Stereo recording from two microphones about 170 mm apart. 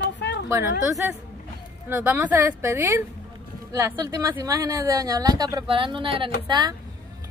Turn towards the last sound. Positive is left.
turn(degrees=-25)  # may be behind; listen again after turning